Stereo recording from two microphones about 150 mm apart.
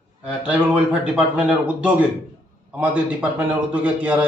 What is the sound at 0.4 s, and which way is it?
A man's voice, 5° right (ahead or behind).